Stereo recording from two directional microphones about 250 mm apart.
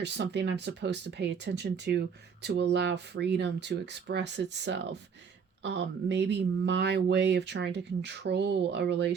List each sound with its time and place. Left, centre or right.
0.0 s speech: right